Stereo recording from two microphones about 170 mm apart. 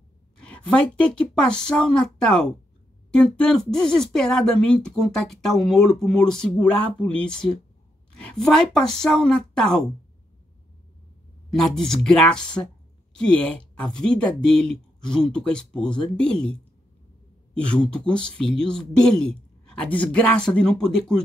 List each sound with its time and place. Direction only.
0.4 s speech: 5° left (ahead or behind)
11.5 s speech: 5° left (ahead or behind)
17.6 s speech: 5° left (ahead or behind)